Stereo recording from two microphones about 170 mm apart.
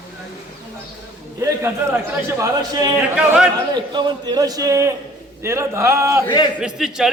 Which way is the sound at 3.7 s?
25° right (ahead or behind).